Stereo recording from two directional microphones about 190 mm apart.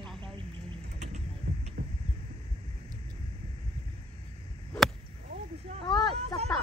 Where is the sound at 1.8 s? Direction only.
50° right (ahead or behind).